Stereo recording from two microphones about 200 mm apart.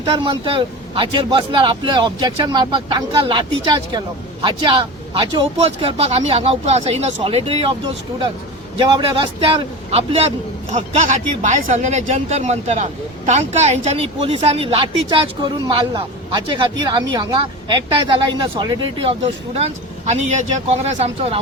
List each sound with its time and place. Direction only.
0.0 s a man's voice: 25° right (ahead or behind)
8.8 s a man's voice: 25° right (ahead or behind)